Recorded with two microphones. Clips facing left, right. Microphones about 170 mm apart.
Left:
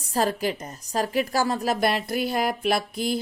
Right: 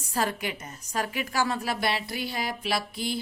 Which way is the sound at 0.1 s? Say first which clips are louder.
Left 5 dB; 35° left (ahead or behind).